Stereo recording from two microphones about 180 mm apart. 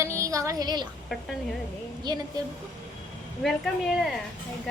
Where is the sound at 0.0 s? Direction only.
15° right (ahead or behind).